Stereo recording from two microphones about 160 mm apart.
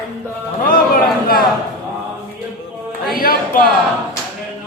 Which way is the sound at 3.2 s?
65° left (ahead or behind).